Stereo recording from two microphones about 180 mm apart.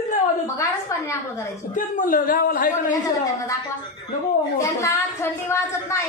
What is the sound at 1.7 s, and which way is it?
A man's voice, 45° left (ahead or behind).